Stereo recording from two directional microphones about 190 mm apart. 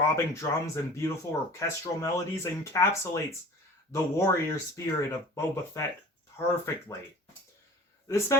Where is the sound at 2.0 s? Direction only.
15° left (ahead or behind).